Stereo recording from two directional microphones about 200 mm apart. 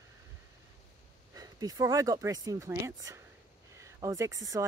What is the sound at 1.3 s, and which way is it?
Speech, 15° right (ahead or behind).